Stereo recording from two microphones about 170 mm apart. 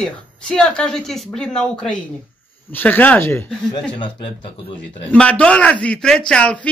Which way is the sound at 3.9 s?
25° left (ahead or behind).